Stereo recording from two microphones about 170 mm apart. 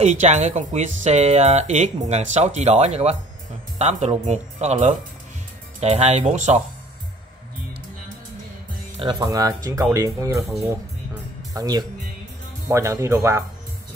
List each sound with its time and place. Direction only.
0.0 s speech: 45° right (ahead or behind)
9.2 s speech: 20° right (ahead or behind)
11.5 s speech: 25° right (ahead or behind)